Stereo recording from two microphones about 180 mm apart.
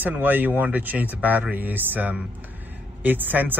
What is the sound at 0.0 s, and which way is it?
A man's voice, 10° right (ahead or behind).